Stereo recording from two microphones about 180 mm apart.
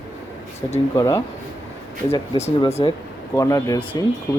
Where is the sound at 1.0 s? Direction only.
15° left (ahead or behind).